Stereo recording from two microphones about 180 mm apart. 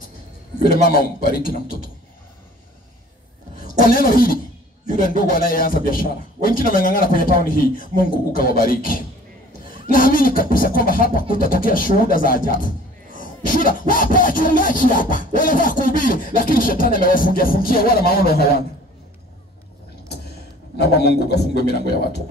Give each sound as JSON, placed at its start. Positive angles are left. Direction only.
{"t": 0.8, "sound": "a man's voice", "side_deg": 55}
{"t": 3.5, "sound": "a man's voice", "side_deg": 50}
{"t": 20.8, "sound": "a man's voice", "side_deg": 65}